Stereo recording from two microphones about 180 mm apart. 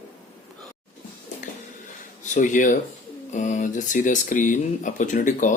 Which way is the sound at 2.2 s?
45° left (ahead or behind).